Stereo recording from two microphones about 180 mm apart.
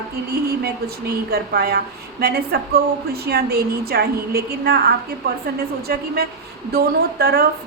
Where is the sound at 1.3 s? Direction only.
60° right (ahead or behind).